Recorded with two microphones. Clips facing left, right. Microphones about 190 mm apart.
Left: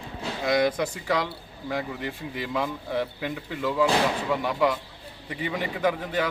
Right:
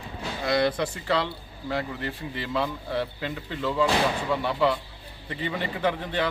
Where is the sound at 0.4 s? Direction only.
15° left (ahead or behind).